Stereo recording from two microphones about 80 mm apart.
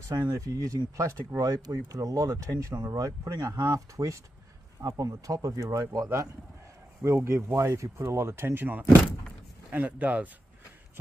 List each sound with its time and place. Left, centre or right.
0.4 s speech: right
7.0 s speech: right; by 10.3 s centre